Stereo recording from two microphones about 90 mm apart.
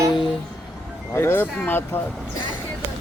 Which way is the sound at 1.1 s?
25° left (ahead or behind).